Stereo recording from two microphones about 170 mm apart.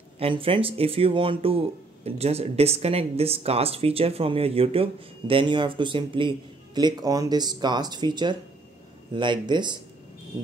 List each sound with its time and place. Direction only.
0.2 s speech: 30° right (ahead or behind)